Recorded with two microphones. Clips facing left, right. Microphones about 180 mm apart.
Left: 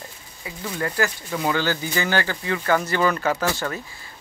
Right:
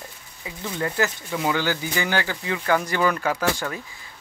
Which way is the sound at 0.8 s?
20° right (ahead or behind).